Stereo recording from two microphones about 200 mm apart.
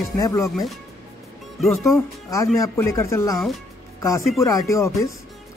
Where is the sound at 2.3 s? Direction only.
15° left (ahead or behind).